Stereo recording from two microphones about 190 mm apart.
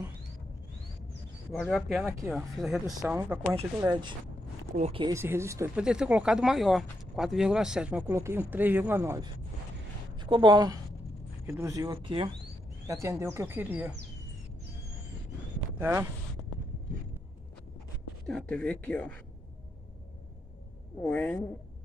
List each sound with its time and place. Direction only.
1.5 s speech: centre (ahead or behind)
2.0 s speech: 15° right (ahead or behind)
2.3 s speech: centre (ahead or behind)
3.2 s speech: 10° right (ahead or behind)
3.9 s speech: 25° right (ahead or behind)
4.7 s speech: 35° right (ahead or behind)
5.0 s speech: 15° right (ahead or behind)
5.8 s speech: 5° right (ahead or behind)
10.1 s speech: 25° right (ahead or behind)
12.8 s speech: 15° right (ahead or behind)
15.8 s speech: 10° right (ahead or behind)
18.2 s speech: 5° left (ahead or behind)
21.0 s speech: 5° left (ahead or behind)